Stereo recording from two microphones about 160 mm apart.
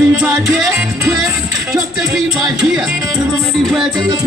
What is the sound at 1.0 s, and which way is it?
Music, 20° right (ahead or behind).